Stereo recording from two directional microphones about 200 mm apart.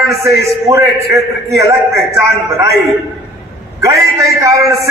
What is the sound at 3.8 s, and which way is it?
A man's voice, 15° right (ahead or behind).